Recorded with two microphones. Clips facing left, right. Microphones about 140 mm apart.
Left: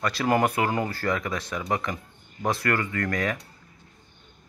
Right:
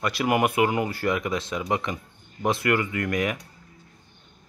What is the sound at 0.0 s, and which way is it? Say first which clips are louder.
Speech: even; 20° right (ahead or behind).